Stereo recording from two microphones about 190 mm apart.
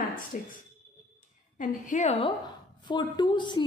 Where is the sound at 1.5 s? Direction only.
40° left (ahead or behind).